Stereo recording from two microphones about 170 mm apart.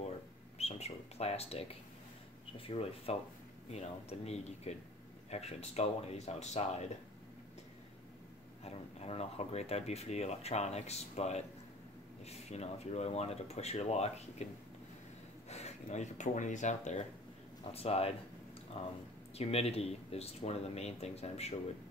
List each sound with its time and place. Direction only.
0.6 s speech: 40° left (ahead or behind)
8.6 s speech: 35° left (ahead or behind)
15.5 s speech: 40° left (ahead or behind)